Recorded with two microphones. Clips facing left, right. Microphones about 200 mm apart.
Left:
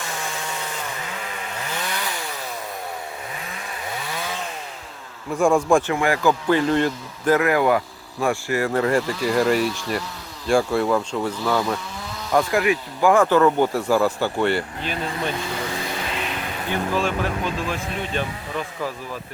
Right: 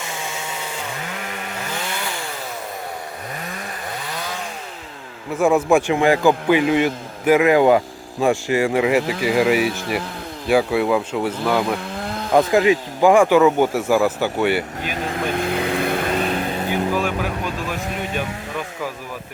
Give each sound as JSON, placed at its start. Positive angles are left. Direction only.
{"t": 5.4, "sound": "speech", "side_deg": -5}
{"t": 5.9, "sound": "speech", "side_deg": -20}
{"t": 9.6, "sound": "speech", "side_deg": -60}
{"t": 10.5, "sound": "speech", "side_deg": 0}
{"t": 11.9, "sound": "chainsaw", "side_deg": -55}
{"t": 12.3, "sound": "speech", "side_deg": -20}
{"t": 15.0, "sound": "vehicle", "side_deg": -55}
{"t": 16.6, "sound": "speech", "side_deg": -10}